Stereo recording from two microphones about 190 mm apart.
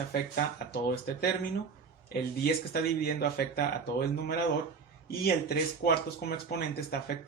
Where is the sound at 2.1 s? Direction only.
55° left (ahead or behind).